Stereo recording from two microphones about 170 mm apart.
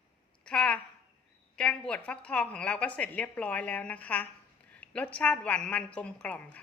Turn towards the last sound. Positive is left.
turn(degrees=10)  # may be behind; listen again after turning